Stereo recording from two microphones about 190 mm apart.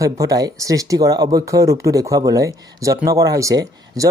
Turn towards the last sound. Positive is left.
turn(degrees=-20)  # may be behind; listen again after turning